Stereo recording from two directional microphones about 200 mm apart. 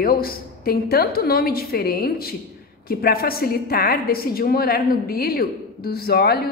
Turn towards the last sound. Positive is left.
turn(degrees=55)  # may be behind; listen again after turning